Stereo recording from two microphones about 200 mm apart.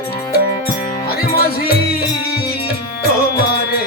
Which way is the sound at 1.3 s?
50° left (ahead or behind).